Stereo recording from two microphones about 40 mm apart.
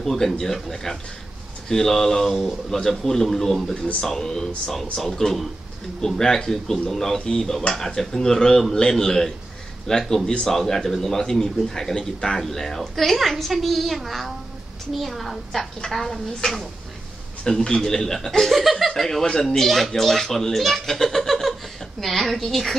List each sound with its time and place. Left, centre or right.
0.0 s a man's voice: centre
3.7 s a man's voice: left
18.5 s a woman's voice: centre